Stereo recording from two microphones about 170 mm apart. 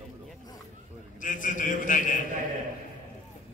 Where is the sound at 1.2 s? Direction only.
50° left (ahead or behind).